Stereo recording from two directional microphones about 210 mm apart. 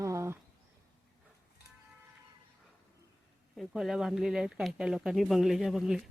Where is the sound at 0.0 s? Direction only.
15° right (ahead or behind).